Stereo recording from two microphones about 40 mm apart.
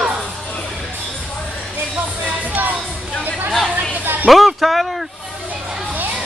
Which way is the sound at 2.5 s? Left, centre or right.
Right.